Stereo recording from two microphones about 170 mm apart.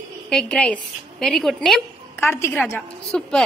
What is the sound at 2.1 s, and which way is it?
A child's voice, 15° left (ahead or behind).